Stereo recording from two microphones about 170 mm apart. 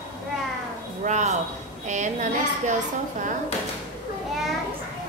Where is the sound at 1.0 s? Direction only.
45° right (ahead or behind).